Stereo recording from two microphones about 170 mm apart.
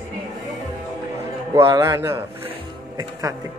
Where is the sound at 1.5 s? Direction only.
20° right (ahead or behind).